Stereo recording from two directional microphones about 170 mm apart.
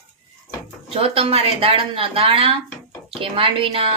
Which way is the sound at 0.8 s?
35° right (ahead or behind).